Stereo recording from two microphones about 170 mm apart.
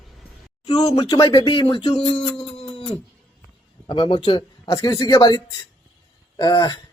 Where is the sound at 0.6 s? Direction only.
25° left (ahead or behind).